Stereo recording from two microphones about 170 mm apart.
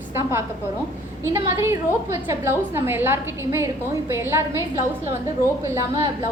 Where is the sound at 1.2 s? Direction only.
15° right (ahead or behind).